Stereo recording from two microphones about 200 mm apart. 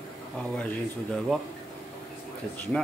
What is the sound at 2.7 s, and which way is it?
Speech, 5° left (ahead or behind).